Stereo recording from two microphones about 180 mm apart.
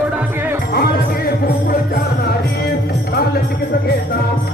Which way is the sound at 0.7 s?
60° left (ahead or behind).